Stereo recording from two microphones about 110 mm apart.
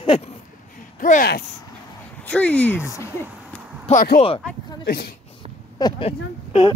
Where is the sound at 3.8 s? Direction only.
60° left (ahead or behind).